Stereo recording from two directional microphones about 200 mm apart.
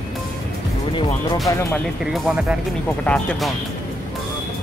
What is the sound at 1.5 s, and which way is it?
Speech, 15° left (ahead or behind).